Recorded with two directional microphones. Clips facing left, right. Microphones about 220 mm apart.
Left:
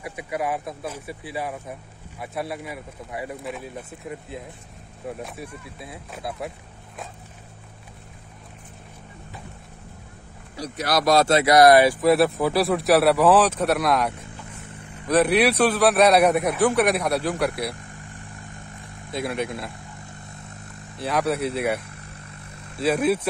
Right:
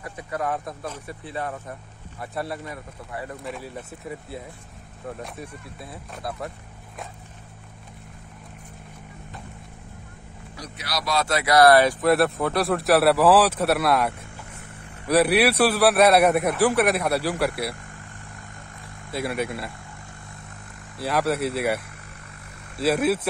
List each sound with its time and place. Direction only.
0.0 s speech: 10° left (ahead or behind)
3.4 s speech: centre (ahead or behind)
10.8 s speech: 50° left (ahead or behind)
11.2 s speech: 25° left (ahead or behind); by 17.7 s 5° right (ahead or behind)
19.1 s speech: 5° right (ahead or behind)
21.0 s speech: centre (ahead or behind)